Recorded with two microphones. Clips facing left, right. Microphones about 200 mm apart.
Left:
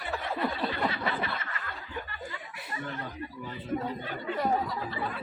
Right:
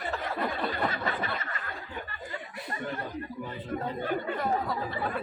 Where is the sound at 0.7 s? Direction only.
45° right (ahead or behind).